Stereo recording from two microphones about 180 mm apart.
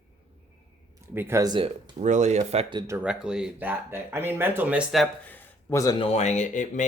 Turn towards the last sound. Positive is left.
turn(degrees=40)  # may be behind; listen again after turning